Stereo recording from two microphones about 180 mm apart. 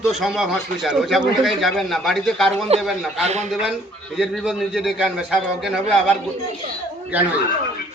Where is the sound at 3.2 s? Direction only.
40° right (ahead or behind).